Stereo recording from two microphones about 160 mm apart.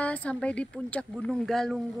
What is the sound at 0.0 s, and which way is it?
Speech, 10° left (ahead or behind).